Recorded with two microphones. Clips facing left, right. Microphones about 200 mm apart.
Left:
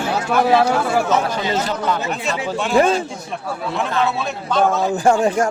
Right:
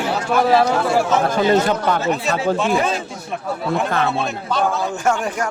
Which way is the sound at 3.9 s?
55° right (ahead or behind).